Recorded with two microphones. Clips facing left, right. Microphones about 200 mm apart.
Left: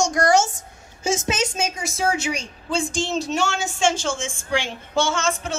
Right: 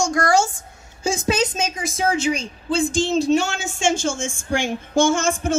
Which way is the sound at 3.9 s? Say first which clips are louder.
Right 3 dB; 45° right (ahead or behind).